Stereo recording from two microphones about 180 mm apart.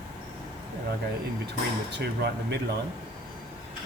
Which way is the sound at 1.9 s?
70° right (ahead or behind).